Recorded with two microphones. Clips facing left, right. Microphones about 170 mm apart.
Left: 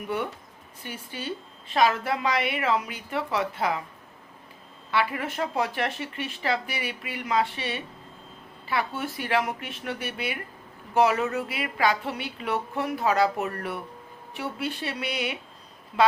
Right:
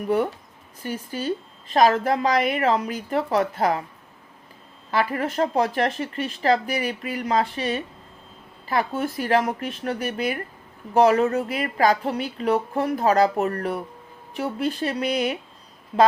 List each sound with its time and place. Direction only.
0.8 s a woman's voice: 40° right (ahead or behind)
4.9 s a woman's voice: 40° right (ahead or behind)